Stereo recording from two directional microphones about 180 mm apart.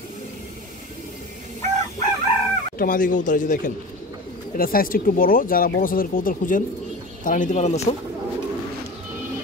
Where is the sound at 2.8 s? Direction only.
50° left (ahead or behind).